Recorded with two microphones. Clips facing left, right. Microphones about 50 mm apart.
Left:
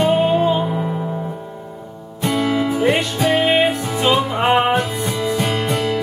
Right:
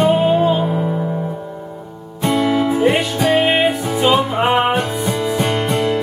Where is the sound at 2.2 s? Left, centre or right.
Centre.